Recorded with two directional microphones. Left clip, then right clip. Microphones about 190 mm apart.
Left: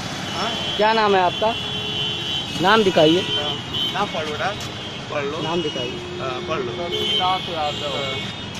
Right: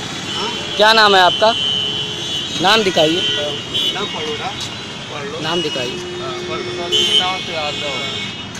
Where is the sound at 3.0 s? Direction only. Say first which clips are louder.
Right 1 dB; 35° left (ahead or behind).